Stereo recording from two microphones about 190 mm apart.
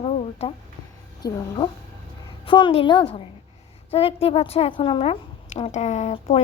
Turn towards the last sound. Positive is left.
turn(degrees=35)  # may be behind; listen again after turning